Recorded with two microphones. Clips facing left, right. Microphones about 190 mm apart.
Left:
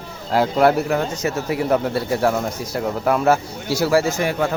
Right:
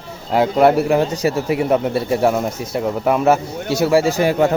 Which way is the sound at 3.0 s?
5° right (ahead or behind).